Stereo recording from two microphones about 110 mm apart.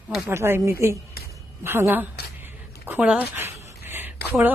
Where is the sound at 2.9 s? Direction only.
10° right (ahead or behind).